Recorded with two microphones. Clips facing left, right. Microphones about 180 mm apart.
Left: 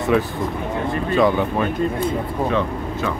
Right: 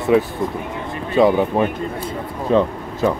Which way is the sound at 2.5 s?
35° right (ahead or behind).